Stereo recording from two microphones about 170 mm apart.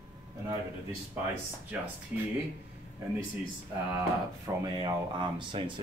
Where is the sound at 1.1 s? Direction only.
10° right (ahead or behind).